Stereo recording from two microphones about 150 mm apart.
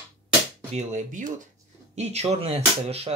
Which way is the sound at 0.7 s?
55° right (ahead or behind).